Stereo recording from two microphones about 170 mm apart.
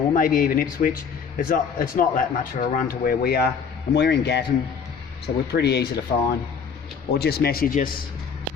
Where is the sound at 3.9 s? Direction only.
85° left.